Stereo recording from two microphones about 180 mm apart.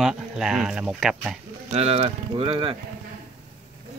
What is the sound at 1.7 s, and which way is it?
Speech, 35° right (ahead or behind).